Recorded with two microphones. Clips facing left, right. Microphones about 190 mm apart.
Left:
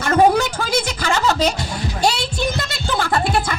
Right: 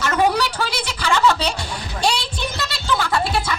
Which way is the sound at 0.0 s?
50° left (ahead or behind).